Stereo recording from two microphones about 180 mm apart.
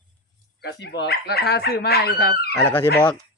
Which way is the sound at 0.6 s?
70° left (ahead or behind).